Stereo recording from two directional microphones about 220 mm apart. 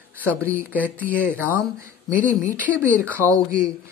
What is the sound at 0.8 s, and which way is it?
Speech, 5° left (ahead or behind).